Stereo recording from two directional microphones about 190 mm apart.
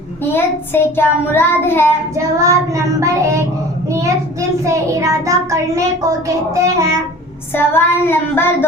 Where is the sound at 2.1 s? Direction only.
15° right (ahead or behind).